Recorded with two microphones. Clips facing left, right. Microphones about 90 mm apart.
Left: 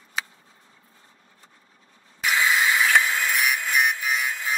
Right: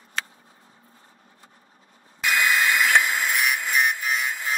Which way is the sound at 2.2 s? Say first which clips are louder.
Even; centre (ahead or behind).